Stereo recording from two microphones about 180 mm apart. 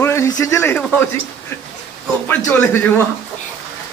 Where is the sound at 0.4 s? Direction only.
15° left (ahead or behind).